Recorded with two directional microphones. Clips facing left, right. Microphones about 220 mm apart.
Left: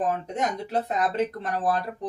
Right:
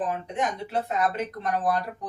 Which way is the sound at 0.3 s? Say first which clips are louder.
Left 1 dB; 35° left (ahead or behind).